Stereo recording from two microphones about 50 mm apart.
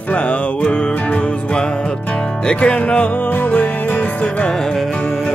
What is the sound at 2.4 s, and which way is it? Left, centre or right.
Music, left.